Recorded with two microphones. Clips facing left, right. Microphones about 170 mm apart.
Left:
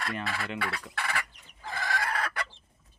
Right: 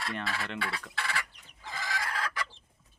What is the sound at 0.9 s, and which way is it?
Chicken, 60° left (ahead or behind).